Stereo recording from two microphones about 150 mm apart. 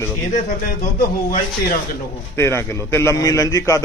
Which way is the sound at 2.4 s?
15° left (ahead or behind).